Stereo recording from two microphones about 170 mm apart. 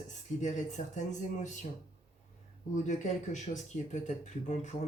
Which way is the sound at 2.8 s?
45° left (ahead or behind).